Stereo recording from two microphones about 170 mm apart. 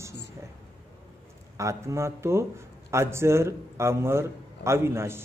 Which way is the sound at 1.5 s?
15° right (ahead or behind).